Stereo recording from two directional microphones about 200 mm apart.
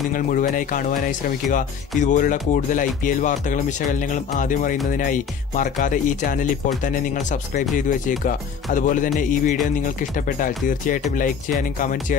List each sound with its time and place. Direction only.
0.1 s speech: 45° left (ahead or behind)
8.2 s speech: 40° left (ahead or behind)